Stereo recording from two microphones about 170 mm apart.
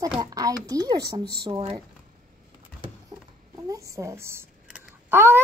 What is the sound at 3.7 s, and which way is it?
Speech, 20° right (ahead or behind).